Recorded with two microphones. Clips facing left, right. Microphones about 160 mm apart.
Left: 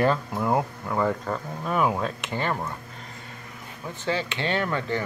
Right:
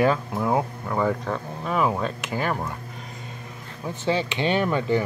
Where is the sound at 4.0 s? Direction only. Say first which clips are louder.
Right 4 dB; 15° right (ahead or behind).